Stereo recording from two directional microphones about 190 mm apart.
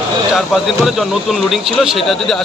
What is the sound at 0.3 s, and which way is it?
Speech, centre (ahead or behind).